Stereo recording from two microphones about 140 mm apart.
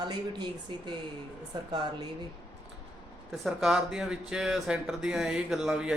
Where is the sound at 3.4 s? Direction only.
5° right (ahead or behind).